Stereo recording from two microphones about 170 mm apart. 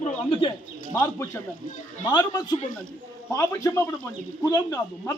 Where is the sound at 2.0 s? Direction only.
25° left (ahead or behind).